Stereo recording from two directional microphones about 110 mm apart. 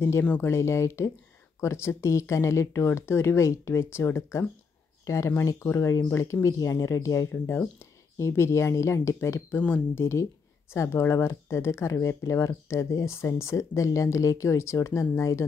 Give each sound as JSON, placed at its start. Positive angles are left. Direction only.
{"t": 0.2, "sound": "speech", "side_deg": 20}
{"t": 9.6, "sound": "speech", "side_deg": 15}